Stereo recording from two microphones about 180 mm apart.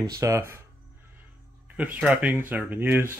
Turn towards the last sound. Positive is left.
turn(degrees=-10)  # may be behind; listen again after turning